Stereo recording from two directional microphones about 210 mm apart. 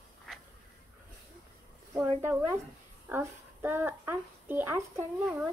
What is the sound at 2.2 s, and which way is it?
Speech, 15° right (ahead or behind).